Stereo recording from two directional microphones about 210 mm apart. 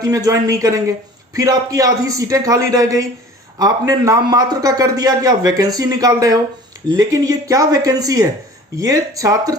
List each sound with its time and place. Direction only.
0.0 s a man's voice: 15° right (ahead or behind)